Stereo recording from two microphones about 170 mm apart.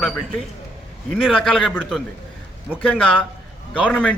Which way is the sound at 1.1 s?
Centre (ahead or behind).